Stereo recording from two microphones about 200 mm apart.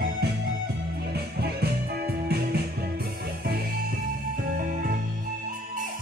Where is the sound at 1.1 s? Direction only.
50° right (ahead or behind).